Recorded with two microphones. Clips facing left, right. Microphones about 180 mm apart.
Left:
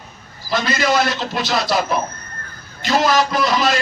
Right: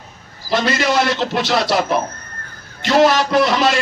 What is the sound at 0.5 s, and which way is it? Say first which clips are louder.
A man's voice: right 1 dB; 70° right (ahead or behind).